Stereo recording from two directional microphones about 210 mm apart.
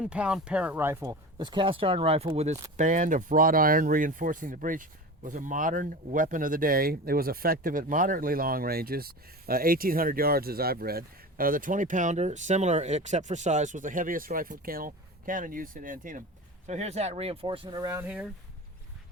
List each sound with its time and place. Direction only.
0.0 s speech: 5° right (ahead or behind)